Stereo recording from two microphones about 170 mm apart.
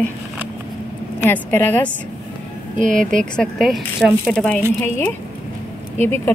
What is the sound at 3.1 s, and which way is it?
Speech, 5° left (ahead or behind).